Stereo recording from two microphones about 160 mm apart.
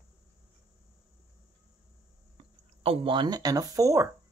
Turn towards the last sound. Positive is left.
turn(degrees=-20)  # may be behind; listen again after turning